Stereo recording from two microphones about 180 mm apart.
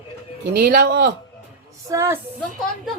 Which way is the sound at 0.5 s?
60° right (ahead or behind).